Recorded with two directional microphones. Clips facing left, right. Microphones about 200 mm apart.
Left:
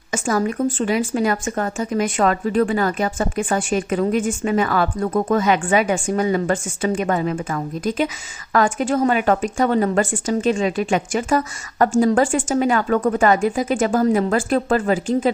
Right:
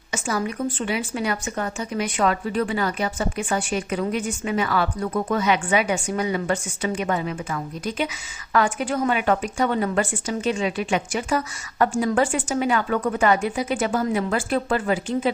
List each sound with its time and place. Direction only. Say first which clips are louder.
0.1 s speech: left 5 dB; 45° left (ahead or behind)